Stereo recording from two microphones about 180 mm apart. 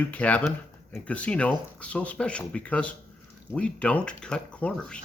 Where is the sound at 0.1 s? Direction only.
10° left (ahead or behind).